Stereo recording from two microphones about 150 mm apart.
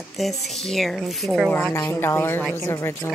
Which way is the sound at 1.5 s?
15° left (ahead or behind).